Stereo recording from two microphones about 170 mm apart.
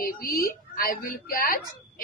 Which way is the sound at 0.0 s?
60° left (ahead or behind).